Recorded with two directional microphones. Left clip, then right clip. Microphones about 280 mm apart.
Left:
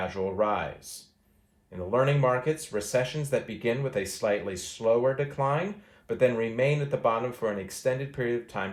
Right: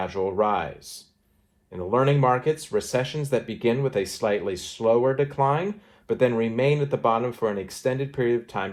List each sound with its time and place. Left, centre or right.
0.0 s speech: centre
1.7 s speech: centre